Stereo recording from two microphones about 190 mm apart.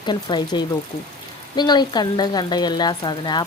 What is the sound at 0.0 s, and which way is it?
Speech, 25° left (ahead or behind).